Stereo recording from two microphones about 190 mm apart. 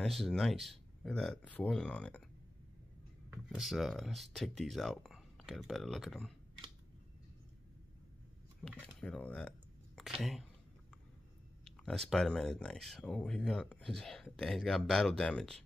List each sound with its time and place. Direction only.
0.0 s speech: centre (ahead or behind)
3.4 s speech: centre (ahead or behind)
8.6 s speech: 5° left (ahead or behind)
11.6 s speech: centre (ahead or behind)